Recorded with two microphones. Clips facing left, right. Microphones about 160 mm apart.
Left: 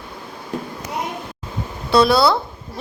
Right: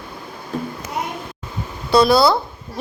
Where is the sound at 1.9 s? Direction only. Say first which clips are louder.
Right 1 dB; centre (ahead or behind).